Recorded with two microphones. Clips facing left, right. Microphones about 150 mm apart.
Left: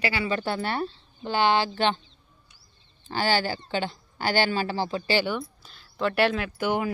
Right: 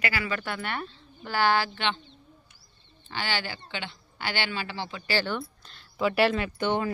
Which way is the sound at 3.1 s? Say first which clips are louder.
Left 7 dB; 40° left (ahead or behind).